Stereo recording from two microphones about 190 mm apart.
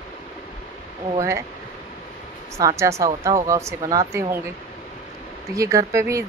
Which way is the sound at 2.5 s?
15° right (ahead or behind).